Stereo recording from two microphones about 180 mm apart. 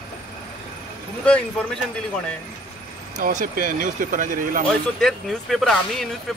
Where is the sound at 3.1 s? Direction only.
50° right (ahead or behind).